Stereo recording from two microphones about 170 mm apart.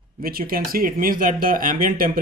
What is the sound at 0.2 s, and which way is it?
Speech, 60° right (ahead or behind).